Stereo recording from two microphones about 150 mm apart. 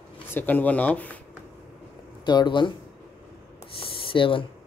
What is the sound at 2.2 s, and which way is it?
Speech, 30° left (ahead or behind).